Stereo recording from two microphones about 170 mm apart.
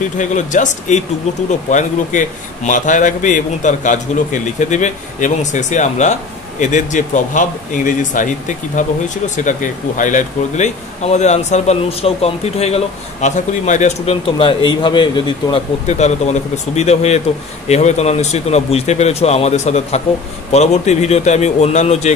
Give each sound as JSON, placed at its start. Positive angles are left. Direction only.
{"t": 0.2, "sound": "speech", "side_deg": 45}
{"t": 15.9, "sound": "a man's voice", "side_deg": 40}